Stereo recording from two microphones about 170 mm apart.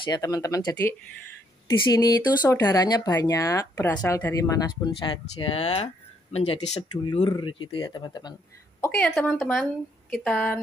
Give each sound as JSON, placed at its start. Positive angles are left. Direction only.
{"t": 0.1, "sound": "speech", "side_deg": 20}
{"t": 8.8, "sound": "speech", "side_deg": 10}